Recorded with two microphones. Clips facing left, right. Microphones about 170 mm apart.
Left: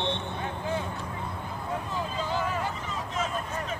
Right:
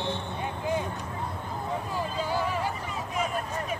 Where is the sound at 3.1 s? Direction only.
10° right (ahead or behind).